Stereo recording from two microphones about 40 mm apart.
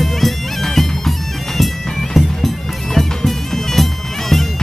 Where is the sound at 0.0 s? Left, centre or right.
Centre.